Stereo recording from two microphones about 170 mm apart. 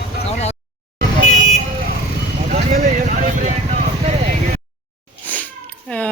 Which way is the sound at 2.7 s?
50° right (ahead or behind).